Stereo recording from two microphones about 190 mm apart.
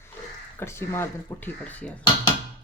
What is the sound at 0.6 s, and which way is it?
Speech, 15° left (ahead or behind).